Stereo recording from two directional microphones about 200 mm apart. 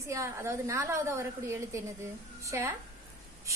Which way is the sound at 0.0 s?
15° right (ahead or behind).